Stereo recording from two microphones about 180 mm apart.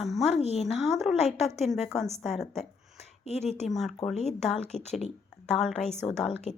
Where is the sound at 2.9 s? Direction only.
35° left (ahead or behind).